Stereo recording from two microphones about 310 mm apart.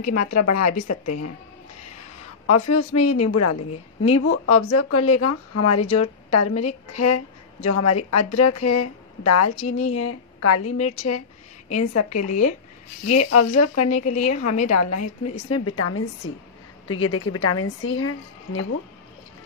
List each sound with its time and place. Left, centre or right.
0.1 s a woman's voice: left
2.4 s a woman's voice: left
9.6 s speech: left
9.8 s a woman's voice: left
10.8 s speech: left
11.7 s a woman's voice: left
13.7 s speech: left
14.7 s a woman's voice: left